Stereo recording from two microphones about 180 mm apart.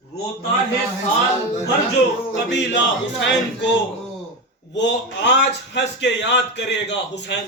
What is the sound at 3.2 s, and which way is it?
Speech, 75° left (ahead or behind).